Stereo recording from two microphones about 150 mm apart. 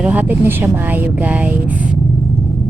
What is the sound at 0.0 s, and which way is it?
A woman's voice, 10° right (ahead or behind).